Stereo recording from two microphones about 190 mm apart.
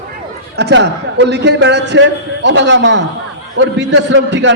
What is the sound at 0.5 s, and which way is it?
A man's voice, 65° right (ahead or behind).